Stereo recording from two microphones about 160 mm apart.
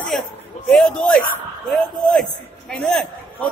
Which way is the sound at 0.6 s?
5° left (ahead or behind).